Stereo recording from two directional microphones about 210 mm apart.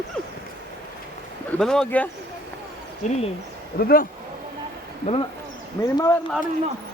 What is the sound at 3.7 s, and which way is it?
Speech, 45° left (ahead or behind).